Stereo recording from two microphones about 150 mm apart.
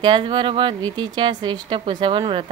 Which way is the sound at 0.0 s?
35° right (ahead or behind).